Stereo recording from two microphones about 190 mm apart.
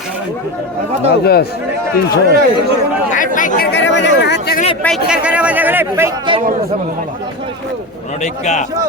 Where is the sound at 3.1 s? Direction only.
45° left (ahead or behind).